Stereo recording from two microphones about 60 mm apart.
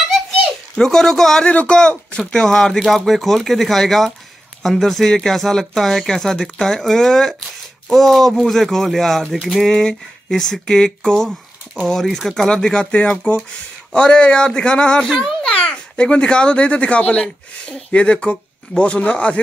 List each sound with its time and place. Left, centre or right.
0.7 s a child's voice: centre
1.5 s a child's voice: centre